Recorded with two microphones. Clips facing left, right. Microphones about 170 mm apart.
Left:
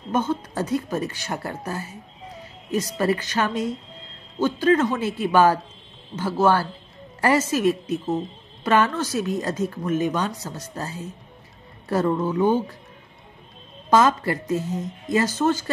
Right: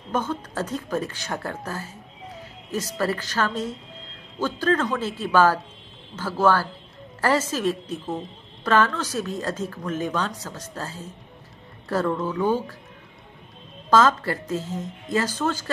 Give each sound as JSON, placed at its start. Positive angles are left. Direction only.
{"t": 0.1, "sound": "speech", "side_deg": 10}
{"t": 3.0, "sound": "speech", "side_deg": 15}
{"t": 13.8, "sound": "speech", "side_deg": 15}